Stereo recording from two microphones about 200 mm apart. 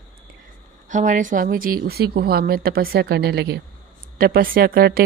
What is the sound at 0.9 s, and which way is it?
Speech, 40° right (ahead or behind).